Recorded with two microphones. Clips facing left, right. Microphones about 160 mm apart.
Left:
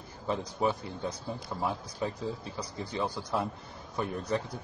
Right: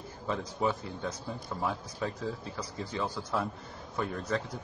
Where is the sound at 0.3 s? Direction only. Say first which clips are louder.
Left 1 dB; 20° left (ahead or behind).